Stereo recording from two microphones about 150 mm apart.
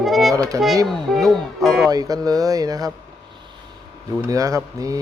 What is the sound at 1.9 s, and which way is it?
A man's voice, 25° right (ahead or behind).